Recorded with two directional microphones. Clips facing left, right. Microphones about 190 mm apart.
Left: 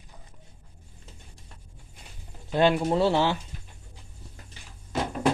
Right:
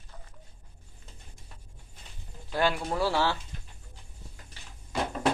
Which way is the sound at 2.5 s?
20° left (ahead or behind).